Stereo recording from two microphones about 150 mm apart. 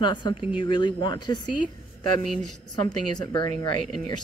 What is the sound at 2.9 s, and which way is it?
Speech, 30° left (ahead or behind).